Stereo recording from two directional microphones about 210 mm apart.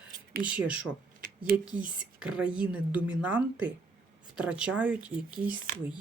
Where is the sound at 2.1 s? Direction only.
5° right (ahead or behind).